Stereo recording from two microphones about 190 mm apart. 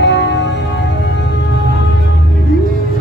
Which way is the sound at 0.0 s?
65° left (ahead or behind).